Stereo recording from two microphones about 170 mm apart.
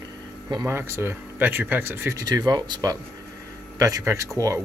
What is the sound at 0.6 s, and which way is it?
Speech, 15° right (ahead or behind).